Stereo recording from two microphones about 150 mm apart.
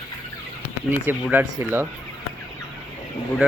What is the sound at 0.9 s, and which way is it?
Speech, 10° right (ahead or behind).